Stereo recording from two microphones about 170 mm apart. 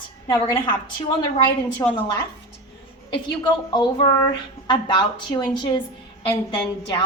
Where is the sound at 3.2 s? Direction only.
25° left (ahead or behind).